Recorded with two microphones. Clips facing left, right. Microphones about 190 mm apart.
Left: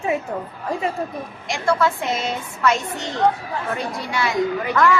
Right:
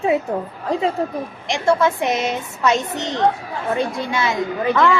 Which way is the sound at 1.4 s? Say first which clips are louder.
Right 3 dB; 20° right (ahead or behind).